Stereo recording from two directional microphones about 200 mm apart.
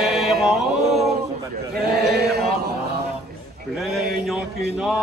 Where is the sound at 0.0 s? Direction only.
Centre (ahead or behind).